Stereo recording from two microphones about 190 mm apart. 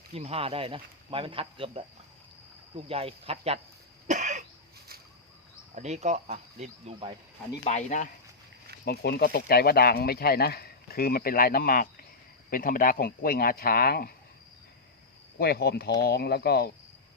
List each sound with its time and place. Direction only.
0.1 s speech: 30° right (ahead or behind)
4.0 s cough: 40° right (ahead or behind)
5.7 s speech: 35° right (ahead or behind)
7.6 s speech: 40° left (ahead or behind)
8.8 s speech: 55° left (ahead or behind)
15.4 s speech: 55° left (ahead or behind)